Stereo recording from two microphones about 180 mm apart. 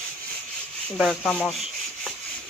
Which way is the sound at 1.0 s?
5° left (ahead or behind).